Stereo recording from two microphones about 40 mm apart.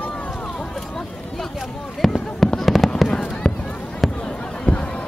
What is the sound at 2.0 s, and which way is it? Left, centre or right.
Speech, centre.